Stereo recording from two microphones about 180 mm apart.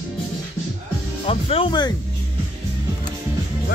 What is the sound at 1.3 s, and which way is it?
Speech, 30° left (ahead or behind).